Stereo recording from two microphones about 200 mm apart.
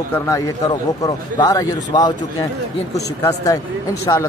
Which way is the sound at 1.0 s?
20° left (ahead or behind).